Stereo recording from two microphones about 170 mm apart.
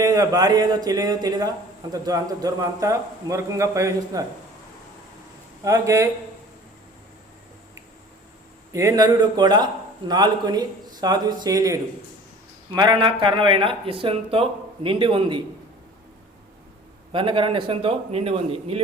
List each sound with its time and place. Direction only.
0.0 s a man's voice: 20° right (ahead or behind)
5.6 s speech: 20° right (ahead or behind)
8.7 s a man's voice: 20° right (ahead or behind)
17.1 s speech: 30° right (ahead or behind)